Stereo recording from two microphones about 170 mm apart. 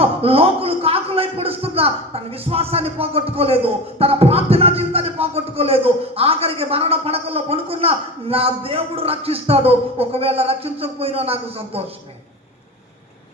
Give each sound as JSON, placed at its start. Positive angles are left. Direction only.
{"t": 0.0, "sound": "a man's voice", "side_deg": -35}